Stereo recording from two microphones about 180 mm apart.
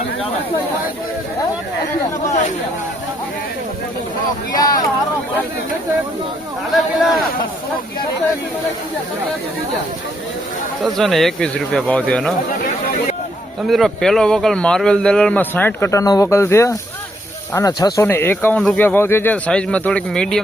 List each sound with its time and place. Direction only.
4.5 s speech: 20° left (ahead or behind)
6.7 s speech: centre (ahead or behind)
10.8 s speech: centre (ahead or behind)
13.7 s speech: centre (ahead or behind)